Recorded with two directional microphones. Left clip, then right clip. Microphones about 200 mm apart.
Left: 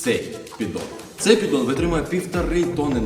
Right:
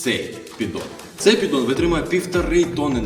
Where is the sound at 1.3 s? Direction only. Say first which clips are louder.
Right 1 dB; 15° left (ahead or behind).